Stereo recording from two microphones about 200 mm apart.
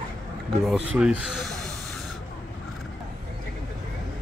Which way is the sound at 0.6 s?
Centre (ahead or behind).